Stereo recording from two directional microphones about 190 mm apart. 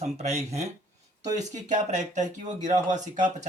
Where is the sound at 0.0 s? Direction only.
35° right (ahead or behind).